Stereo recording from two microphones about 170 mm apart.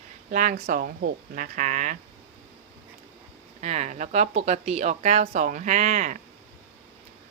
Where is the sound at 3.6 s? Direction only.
40° right (ahead or behind).